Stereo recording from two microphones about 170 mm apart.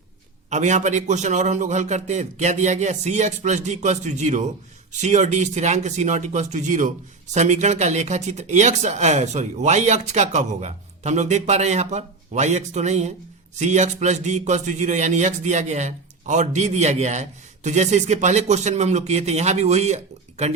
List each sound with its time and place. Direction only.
0.5 s a man's voice: 45° right (ahead or behind)